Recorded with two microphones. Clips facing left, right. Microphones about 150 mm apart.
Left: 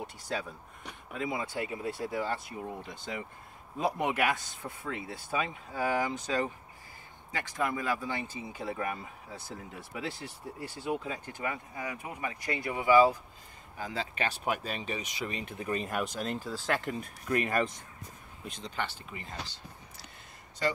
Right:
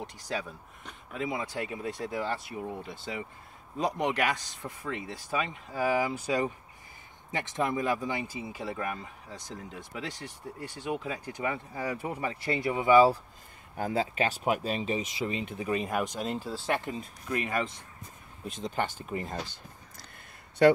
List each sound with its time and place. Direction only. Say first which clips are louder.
0.0 s speech: right 1 dB; centre (ahead or behind)
7.2 s speech: right 2 dB; 20° right (ahead or behind); by 10.1 s 5° left (ahead or behind)
10.9 s speech: right 1 dB; 10° right (ahead or behind)
11.3 s speech: right 5 dB; 25° right (ahead or behind)
13.7 s speech: right 7 dB; 55° right (ahead or behind)
14.5 s speech: right 5 dB; 35° right (ahead or behind)
15.5 s speech: right 1 dB; 5° right (ahead or behind)
16.4 s speech: right 1 dB; 10° right (ahead or behind)
17.0 s speech: left 2 dB; 45° left (ahead or behind)
18.6 s speech: right 5 dB; 45° right (ahead or behind)
20.6 s speech: right 11 dB; 60° right (ahead or behind)